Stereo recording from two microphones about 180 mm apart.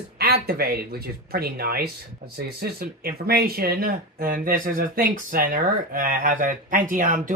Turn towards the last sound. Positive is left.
turn(degrees=-45)  # may be behind; listen again after turning